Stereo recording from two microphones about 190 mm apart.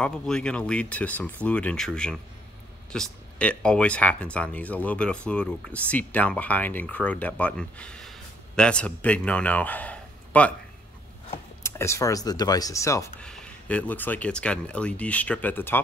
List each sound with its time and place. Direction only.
0.0 s speech: 5° left (ahead or behind)
11.6 s speech: 15° left (ahead or behind)
13.2 s speech: 5° left (ahead or behind)